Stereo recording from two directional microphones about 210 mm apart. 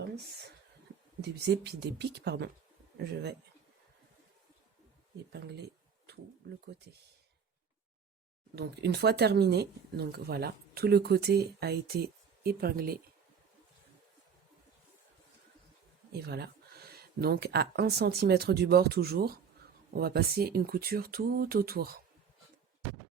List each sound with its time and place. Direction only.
1.2 s speech: 55° right (ahead or behind)
5.3 s a sound: 55° right (ahead or behind)
8.5 s speech: 50° right (ahead or behind)
16.1 s speech: 50° right (ahead or behind)